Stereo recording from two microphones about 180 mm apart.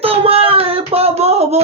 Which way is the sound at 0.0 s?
30° right (ahead or behind).